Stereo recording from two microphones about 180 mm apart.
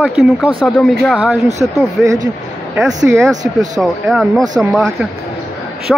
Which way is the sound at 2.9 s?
15° right (ahead or behind).